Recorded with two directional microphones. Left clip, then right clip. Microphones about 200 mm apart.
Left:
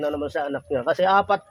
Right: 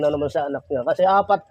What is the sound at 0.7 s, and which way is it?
Speech, 5° left (ahead or behind).